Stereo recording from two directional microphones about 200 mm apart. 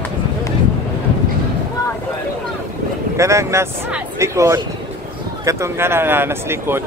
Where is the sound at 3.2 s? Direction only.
15° right (ahead or behind).